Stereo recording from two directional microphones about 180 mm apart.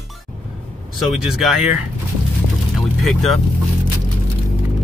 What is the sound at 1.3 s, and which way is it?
Speech, centre (ahead or behind).